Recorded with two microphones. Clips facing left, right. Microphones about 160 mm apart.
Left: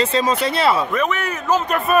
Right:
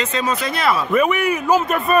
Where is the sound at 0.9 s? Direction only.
10° right (ahead or behind).